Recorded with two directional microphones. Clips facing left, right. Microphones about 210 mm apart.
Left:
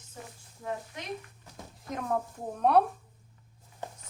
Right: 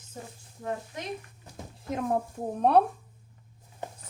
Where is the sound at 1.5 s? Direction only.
25° right (ahead or behind).